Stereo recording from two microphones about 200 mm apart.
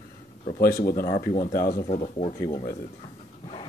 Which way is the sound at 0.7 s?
45° left (ahead or behind).